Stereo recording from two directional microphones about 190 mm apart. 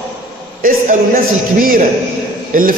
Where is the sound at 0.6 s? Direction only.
50° right (ahead or behind).